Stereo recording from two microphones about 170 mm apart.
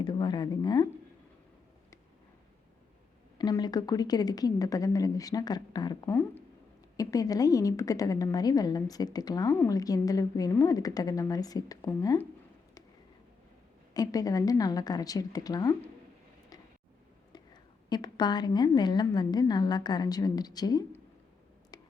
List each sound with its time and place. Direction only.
0.0 s speech: 30° left (ahead or behind)
3.3 s a woman's voice: 25° left (ahead or behind)
13.9 s a woman's voice: 20° left (ahead or behind)
17.3 s a woman's voice: 25° left (ahead or behind)
21.7 s a sound: 25° left (ahead or behind)